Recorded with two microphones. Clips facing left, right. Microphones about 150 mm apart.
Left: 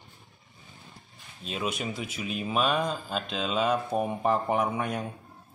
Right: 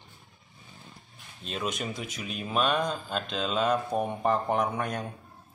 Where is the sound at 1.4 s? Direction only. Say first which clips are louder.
Left 1 dB; 5° left (ahead or behind).